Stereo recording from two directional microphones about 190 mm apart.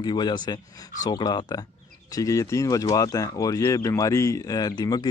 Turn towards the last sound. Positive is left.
turn(degrees=20)  # may be behind; listen again after turning